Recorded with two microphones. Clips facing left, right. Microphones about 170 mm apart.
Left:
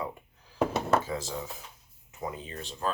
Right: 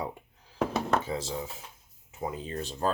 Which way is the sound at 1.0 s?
25° right (ahead or behind).